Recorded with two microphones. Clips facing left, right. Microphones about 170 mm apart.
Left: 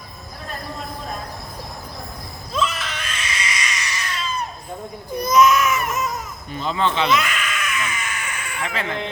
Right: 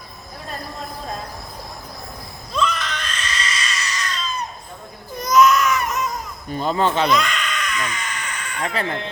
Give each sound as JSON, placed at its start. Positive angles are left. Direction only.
{"t": 2.5, "sound": "screaming", "side_deg": 5}
{"t": 5.3, "sound": "baby cry", "side_deg": 0}
{"t": 6.5, "sound": "speech", "side_deg": -45}
{"t": 7.1, "sound": "a sound", "side_deg": 5}
{"t": 8.6, "sound": "speech", "side_deg": -35}